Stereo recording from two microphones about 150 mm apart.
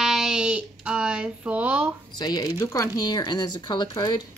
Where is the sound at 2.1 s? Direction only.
25° left (ahead or behind).